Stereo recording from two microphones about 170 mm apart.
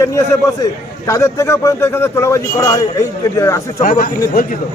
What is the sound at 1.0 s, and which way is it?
A man's voice, 15° left (ahead or behind).